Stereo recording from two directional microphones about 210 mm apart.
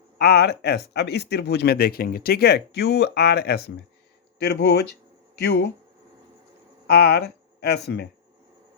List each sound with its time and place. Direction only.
0.2 s speech: 50° left (ahead or behind)
6.8 s speech: 50° left (ahead or behind)